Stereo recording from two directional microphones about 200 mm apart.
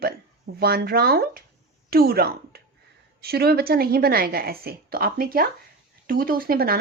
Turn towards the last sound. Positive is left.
turn(degrees=-50)  # may be behind; listen again after turning